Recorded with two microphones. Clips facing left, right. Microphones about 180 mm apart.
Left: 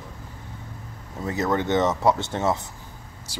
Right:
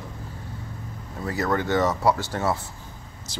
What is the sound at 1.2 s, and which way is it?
Speech, 20° left (ahead or behind).